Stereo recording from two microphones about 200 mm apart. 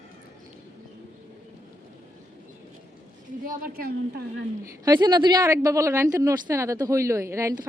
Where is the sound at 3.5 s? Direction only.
45° right (ahead or behind).